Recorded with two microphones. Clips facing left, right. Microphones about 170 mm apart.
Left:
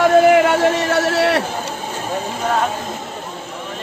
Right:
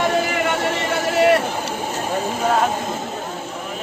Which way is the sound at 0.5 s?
70° left (ahead or behind).